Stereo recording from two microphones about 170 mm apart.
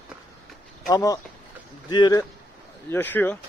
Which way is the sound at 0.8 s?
20° left (ahead or behind).